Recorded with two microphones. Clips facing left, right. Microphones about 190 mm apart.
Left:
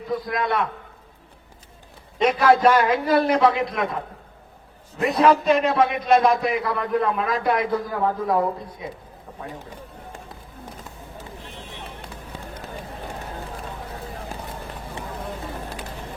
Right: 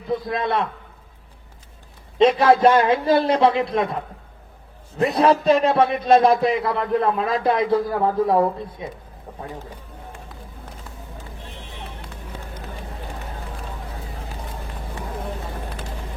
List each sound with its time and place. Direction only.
0.3 s a man's voice: 30° right (ahead or behind)
2.1 s a man's voice: 25° right (ahead or behind)
5.1 s speech: 30° right (ahead or behind)